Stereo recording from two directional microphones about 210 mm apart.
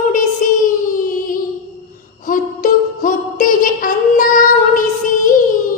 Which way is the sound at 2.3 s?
40° left (ahead or behind).